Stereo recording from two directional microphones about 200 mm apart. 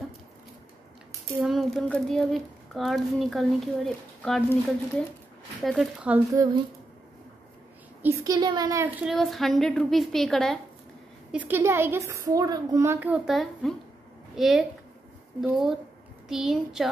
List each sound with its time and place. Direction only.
1.4 s a woman's voice: centre (ahead or behind); by 6.6 s 15° right (ahead or behind)
8.0 s a woman's voice: 15° right (ahead or behind)
9.0 s speech: centre (ahead or behind)
11.3 s a woman's voice: 10° right (ahead or behind)